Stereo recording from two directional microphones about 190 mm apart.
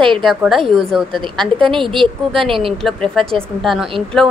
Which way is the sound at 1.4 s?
25° right (ahead or behind).